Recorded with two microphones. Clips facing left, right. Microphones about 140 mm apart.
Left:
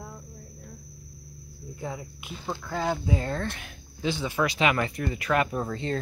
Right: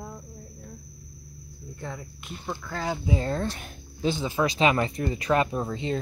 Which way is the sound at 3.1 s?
30° right (ahead or behind).